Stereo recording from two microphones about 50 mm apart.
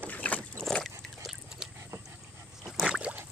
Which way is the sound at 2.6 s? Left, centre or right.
Centre.